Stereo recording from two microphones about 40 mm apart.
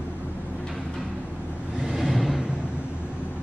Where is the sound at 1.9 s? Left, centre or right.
Centre.